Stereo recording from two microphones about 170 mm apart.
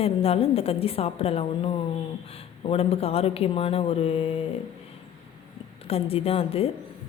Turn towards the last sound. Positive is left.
turn(degrees=35)  # may be behind; listen again after turning